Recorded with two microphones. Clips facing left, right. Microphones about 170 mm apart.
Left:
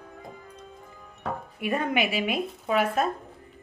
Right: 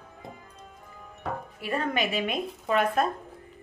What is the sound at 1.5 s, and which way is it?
A woman's voice, 15° left (ahead or behind).